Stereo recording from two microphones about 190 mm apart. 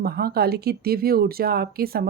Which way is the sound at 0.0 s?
55° right (ahead or behind).